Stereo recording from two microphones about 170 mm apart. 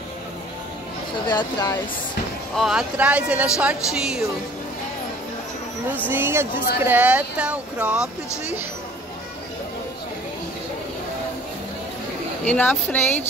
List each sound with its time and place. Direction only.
1.2 s speech: 25° left (ahead or behind)
2.5 s speech: centre (ahead or behind)
6.0 s speech: 15° right (ahead or behind)
12.4 s a woman's voice: 10° left (ahead or behind)